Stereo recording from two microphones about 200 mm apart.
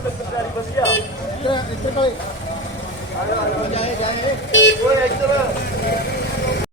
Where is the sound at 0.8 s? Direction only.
15° left (ahead or behind).